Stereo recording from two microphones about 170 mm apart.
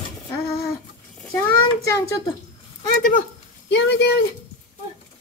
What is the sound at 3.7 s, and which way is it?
Speech, 75° left (ahead or behind).